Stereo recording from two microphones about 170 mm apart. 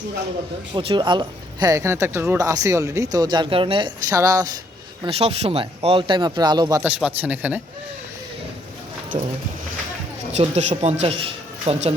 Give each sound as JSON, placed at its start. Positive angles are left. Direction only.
{"t": 0.7, "sound": "speech", "side_deg": -30}
{"t": 5.0, "sound": "speech", "side_deg": -35}
{"t": 6.8, "sound": "speech", "side_deg": -10}
{"t": 9.1, "sound": "speech", "side_deg": -35}
{"t": 10.3, "sound": "speech", "side_deg": -40}